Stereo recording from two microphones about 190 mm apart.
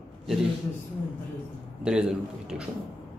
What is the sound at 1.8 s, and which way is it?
Speech, 5° right (ahead or behind).